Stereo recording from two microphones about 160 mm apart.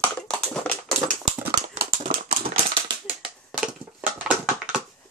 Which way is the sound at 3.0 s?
5° right (ahead or behind).